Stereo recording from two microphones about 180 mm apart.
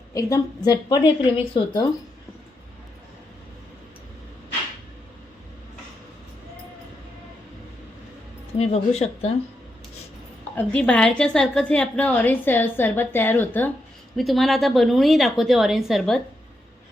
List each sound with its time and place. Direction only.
0.1 s a woman's voice: 20° left (ahead or behind)
8.5 s speech: 35° left (ahead or behind)
10.5 s a woman's voice: 10° left (ahead or behind)